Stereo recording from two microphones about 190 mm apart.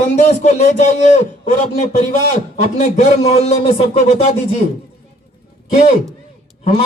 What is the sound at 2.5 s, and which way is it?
Music, 35° left (ahead or behind).